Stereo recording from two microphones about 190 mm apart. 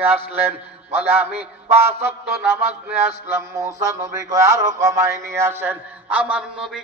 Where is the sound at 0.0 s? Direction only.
10° right (ahead or behind).